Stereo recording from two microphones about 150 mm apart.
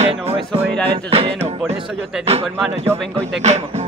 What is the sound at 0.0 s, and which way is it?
Music, 45° right (ahead or behind).